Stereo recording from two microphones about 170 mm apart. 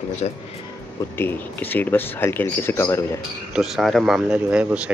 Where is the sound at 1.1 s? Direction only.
10° left (ahead or behind).